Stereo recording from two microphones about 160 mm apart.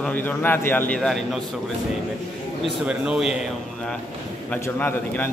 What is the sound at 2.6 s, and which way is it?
Speech, 5° right (ahead or behind).